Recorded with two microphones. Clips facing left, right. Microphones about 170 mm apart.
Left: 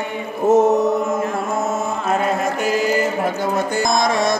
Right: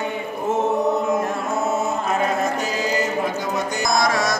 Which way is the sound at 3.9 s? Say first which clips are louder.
Left 1 dB; 25° left (ahead or behind).